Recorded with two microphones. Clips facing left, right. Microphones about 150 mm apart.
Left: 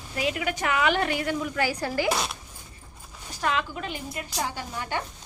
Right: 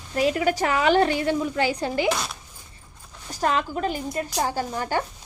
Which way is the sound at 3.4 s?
40° right (ahead or behind).